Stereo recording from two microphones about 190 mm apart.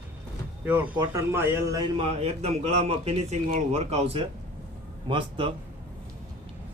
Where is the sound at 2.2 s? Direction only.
35° right (ahead or behind).